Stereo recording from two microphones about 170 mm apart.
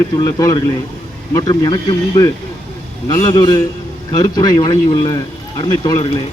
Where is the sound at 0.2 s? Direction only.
20° left (ahead or behind).